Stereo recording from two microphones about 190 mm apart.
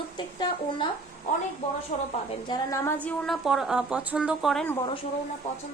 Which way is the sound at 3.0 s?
5° left (ahead or behind).